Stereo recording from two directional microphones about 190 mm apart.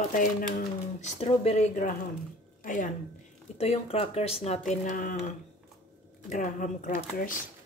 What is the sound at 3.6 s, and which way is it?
Speech, 30° left (ahead or behind).